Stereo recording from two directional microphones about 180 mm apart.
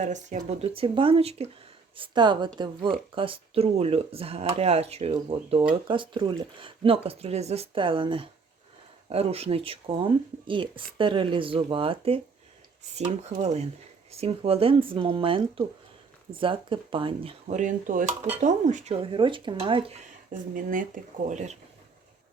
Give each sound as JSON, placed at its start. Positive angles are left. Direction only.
{"t": 0.0, "sound": "speech", "side_deg": -40}
{"t": 13.4, "sound": "speech", "side_deg": -40}
{"t": 17.6, "sound": "speech", "side_deg": -45}
{"t": 19.1, "sound": "speech", "side_deg": -25}
{"t": 20.5, "sound": "speech", "side_deg": -50}